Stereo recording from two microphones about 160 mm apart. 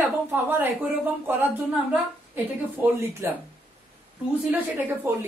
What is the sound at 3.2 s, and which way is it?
Speech, 15° right (ahead or behind).